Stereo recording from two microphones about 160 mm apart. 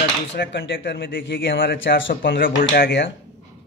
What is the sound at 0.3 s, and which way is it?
Speech, 90° left.